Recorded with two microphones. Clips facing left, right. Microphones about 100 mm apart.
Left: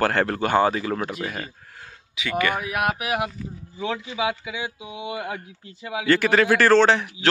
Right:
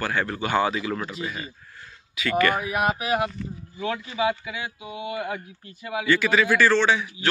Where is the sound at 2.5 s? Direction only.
Centre (ahead or behind).